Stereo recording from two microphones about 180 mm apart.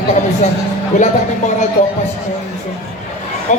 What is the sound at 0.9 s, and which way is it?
Speech, 40° left (ahead or behind).